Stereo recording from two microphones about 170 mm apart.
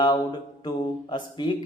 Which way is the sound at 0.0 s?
25° left (ahead or behind).